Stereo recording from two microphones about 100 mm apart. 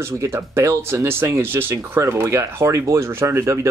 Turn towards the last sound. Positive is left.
turn(degrees=-30)  # may be behind; listen again after turning